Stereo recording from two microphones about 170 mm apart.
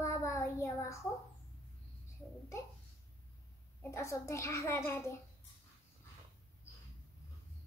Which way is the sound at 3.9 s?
15° left (ahead or behind).